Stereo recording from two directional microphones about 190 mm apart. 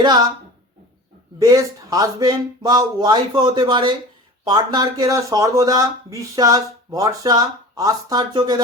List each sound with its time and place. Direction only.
0.0 s speech: 20° right (ahead or behind)
1.4 s speech: 20° right (ahead or behind)